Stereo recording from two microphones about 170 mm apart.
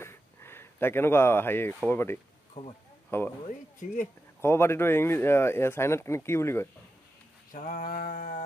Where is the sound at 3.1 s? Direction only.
15° left (ahead or behind).